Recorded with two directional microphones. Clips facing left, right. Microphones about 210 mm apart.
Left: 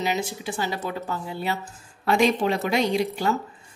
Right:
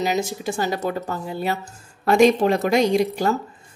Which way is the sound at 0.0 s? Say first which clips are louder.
Right 4 dB; 40° right (ahead or behind).